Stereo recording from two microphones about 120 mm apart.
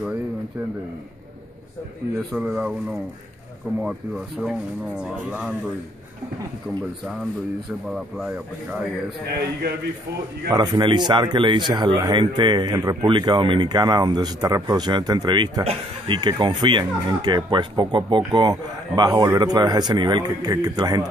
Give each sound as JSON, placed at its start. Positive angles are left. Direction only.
{"t": 2.3, "sound": "speech", "side_deg": -10}
{"t": 7.9, "sound": "speech", "side_deg": -5}
{"t": 10.5, "sound": "speech", "side_deg": -35}